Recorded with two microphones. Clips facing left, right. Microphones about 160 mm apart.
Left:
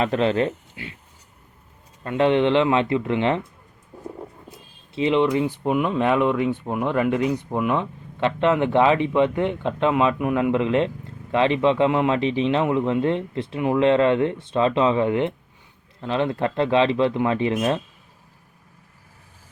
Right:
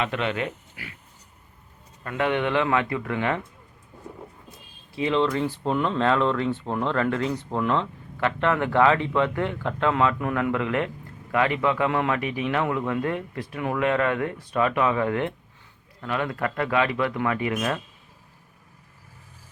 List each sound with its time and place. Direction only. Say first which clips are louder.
0.0 s speech: left 6 dB; 35° left (ahead or behind)
2.0 s speech: left 6 dB; 25° left (ahead or behind)
4.9 s speech: left 4 dB; 20° left (ahead or behind)